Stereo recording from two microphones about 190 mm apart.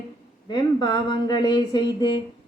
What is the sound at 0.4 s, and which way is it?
A woman's voice, 25° left (ahead or behind).